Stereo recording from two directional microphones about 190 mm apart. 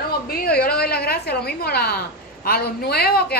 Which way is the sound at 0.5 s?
55° left (ahead or behind).